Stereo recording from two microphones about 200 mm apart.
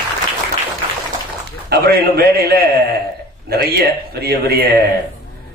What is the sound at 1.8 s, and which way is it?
A man's voice, 50° right (ahead or behind).